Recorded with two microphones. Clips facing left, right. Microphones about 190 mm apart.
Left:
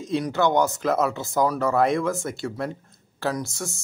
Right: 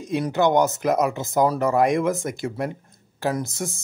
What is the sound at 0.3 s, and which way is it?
A man's voice, 20° right (ahead or behind).